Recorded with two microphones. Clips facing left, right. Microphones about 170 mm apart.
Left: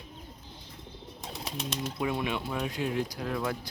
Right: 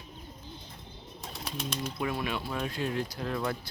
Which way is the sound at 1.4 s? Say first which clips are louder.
Even; 25° left (ahead or behind).